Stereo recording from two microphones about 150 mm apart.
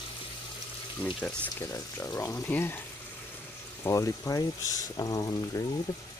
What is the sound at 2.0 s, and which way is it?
Speech, 15° left (ahead or behind).